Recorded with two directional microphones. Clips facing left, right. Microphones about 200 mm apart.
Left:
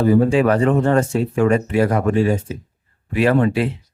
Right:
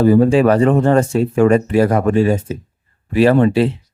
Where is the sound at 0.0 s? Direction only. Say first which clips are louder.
Right 3 dB; 35° right (ahead or behind).